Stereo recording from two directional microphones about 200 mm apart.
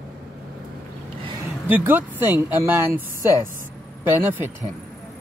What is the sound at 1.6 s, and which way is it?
Speech, 10° right (ahead or behind).